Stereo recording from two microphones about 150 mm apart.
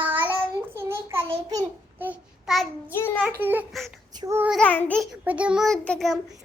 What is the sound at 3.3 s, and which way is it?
A child's voice, 15° right (ahead or behind).